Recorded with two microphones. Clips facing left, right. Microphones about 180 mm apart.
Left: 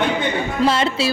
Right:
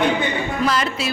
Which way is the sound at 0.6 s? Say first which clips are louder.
Left 5 dB; 25° left (ahead or behind).